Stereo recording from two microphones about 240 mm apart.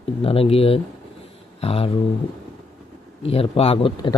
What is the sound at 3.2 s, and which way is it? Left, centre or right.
Speech, left.